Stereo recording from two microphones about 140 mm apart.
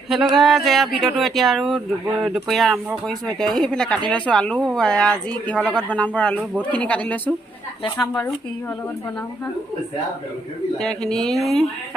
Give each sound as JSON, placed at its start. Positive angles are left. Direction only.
{"t": 0.1, "sound": "speech", "side_deg": 0}
{"t": 10.8, "sound": "speech", "side_deg": 5}